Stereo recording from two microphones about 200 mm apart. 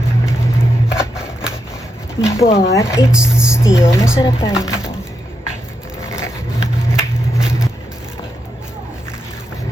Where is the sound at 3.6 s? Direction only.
15° left (ahead or behind).